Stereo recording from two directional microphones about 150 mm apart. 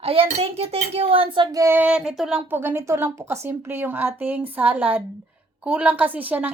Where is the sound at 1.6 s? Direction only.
15° right (ahead or behind).